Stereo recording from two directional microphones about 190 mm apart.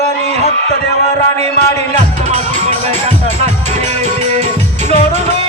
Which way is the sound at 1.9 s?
35° right (ahead or behind).